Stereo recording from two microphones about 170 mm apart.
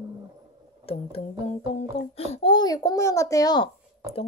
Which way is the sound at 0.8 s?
35° left (ahead or behind).